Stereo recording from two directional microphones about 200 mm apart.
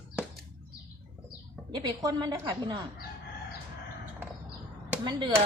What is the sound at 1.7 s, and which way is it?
Speech, 20° right (ahead or behind).